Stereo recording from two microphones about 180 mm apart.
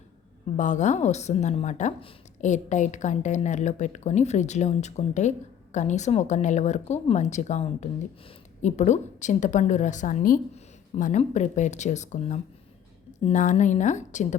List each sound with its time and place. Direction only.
0.5 s speech: 40° left (ahead or behind)